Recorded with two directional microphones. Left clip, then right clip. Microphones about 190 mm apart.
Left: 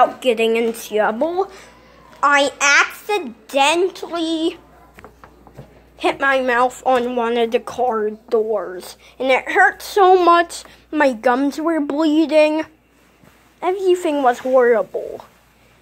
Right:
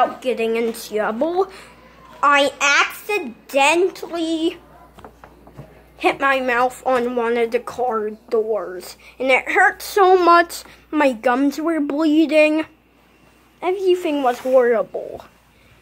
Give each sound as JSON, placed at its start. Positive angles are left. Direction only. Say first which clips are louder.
{"t": 0.0, "sound": "a woman's voice", "louder": "left 4 dB", "side_deg": 25}
{"t": 0.8, "sound": "speech", "louder": "left 4 dB", "side_deg": 10}
{"t": 1.2, "sound": "speech", "louder": "even", "side_deg": -10}
{"t": 2.1, "sound": "a woman's voice", "louder": "even", "side_deg": 0}
{"t": 5.9, "sound": "a woman's voice", "louder": "left 1 dB", "side_deg": 0}